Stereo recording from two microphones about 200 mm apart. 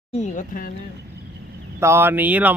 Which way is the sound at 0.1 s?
35° left (ahead or behind).